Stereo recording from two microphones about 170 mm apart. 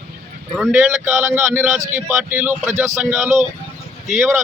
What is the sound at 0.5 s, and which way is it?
Speech, 5° right (ahead or behind).